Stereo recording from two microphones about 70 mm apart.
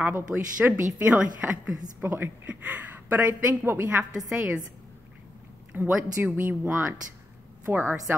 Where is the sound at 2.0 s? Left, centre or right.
Right.